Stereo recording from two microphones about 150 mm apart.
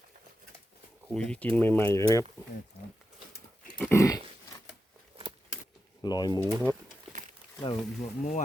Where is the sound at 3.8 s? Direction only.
15° left (ahead or behind).